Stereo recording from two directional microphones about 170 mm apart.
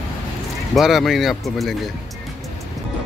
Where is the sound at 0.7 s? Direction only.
Centre (ahead or behind).